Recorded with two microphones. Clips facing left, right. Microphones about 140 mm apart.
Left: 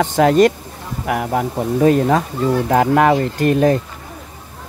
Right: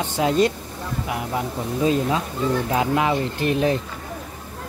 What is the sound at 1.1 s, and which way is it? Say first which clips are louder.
Speech: left 9 dB; 55° left (ahead or behind).